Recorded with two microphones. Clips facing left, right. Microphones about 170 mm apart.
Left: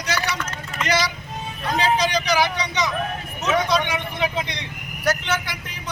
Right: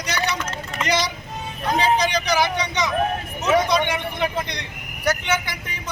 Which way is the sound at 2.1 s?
10° left (ahead or behind).